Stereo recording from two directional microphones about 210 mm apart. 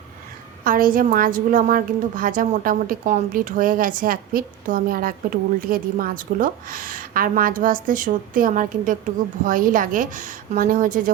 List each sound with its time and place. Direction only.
0.6 s a woman's voice: 40° right (ahead or behind)